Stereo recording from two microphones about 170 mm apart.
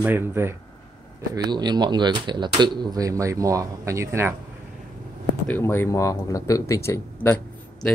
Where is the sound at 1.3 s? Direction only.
25° right (ahead or behind).